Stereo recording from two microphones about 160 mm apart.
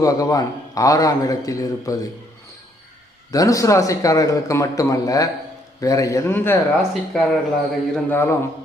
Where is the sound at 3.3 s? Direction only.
20° left (ahead or behind).